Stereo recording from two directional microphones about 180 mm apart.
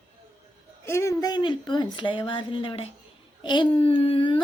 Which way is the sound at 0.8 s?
15° left (ahead or behind).